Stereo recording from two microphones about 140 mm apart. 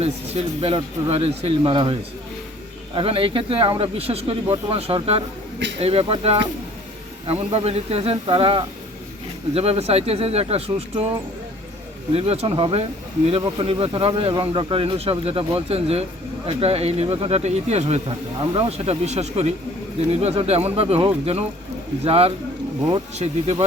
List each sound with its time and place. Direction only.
0.0 s speech: 45° right (ahead or behind)
12.1 s speech: 45° right (ahead or behind)